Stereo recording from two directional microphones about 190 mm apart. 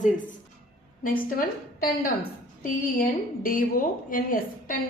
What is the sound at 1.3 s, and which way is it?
A woman's voice, 50° left (ahead or behind).